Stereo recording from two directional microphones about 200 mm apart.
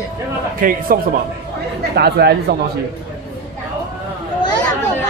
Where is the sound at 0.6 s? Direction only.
45° right (ahead or behind).